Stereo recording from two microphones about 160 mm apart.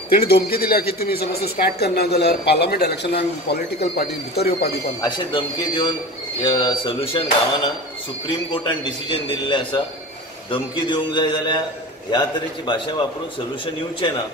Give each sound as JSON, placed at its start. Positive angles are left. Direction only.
{"t": 0.1, "sound": "a woman's voice", "side_deg": 75}
{"t": 5.0, "sound": "a man's voice", "side_deg": 30}
{"t": 8.3, "sound": "a man's voice", "side_deg": 30}